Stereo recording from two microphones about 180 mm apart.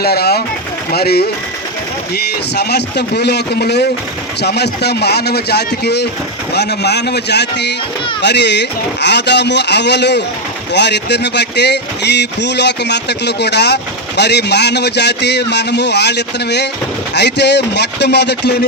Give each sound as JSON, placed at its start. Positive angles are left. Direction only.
{"t": 0.0, "sound": "speech", "side_deg": 60}